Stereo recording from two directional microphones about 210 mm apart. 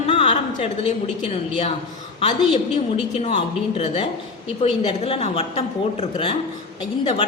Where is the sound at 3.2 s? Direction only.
30° left (ahead or behind).